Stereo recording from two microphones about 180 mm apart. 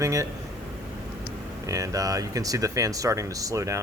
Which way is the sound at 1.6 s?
20° right (ahead or behind).